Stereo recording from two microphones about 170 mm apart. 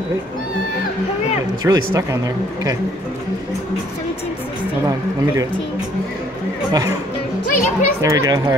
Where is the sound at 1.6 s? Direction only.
20° right (ahead or behind).